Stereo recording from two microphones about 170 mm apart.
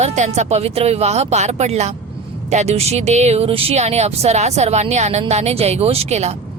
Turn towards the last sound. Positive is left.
turn(degrees=-40)  # may be behind; listen again after turning